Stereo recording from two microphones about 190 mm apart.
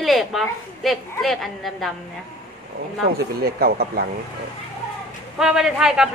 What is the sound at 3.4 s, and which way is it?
Speech, 55° right (ahead or behind).